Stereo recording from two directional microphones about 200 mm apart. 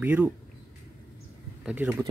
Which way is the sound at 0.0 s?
5° right (ahead or behind).